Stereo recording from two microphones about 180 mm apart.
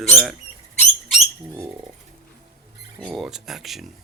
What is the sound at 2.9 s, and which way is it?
Speech, 5° right (ahead or behind).